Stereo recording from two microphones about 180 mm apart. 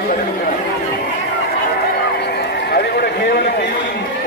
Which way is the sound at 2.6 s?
60° left (ahead or behind).